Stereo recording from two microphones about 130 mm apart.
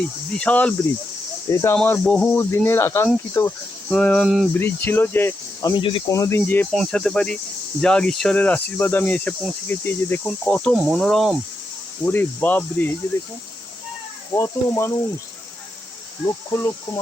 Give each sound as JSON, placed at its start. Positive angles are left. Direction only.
{"t": 0.3, "sound": "speech", "side_deg": 10}
{"t": 2.0, "sound": "speech", "side_deg": 5}
{"t": 2.3, "sound": "speech", "side_deg": 20}
{"t": 3.8, "sound": "speech", "side_deg": 5}
{"t": 5.7, "sound": "speech", "side_deg": 40}
{"t": 6.1, "sound": "speech", "side_deg": 25}
{"t": 6.7, "sound": "speech", "side_deg": 5}
{"t": 12.0, "sound": "speech", "side_deg": 15}
{"t": 14.3, "sound": "speech", "side_deg": 20}
{"t": 16.2, "sound": "speech", "side_deg": 25}